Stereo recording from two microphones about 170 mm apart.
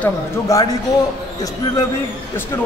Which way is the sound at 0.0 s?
20° left (ahead or behind).